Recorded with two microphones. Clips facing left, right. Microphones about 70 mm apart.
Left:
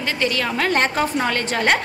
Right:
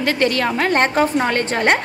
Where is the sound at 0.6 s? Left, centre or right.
Right.